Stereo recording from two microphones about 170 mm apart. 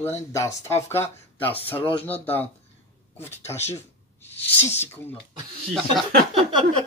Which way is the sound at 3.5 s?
15° left (ahead or behind).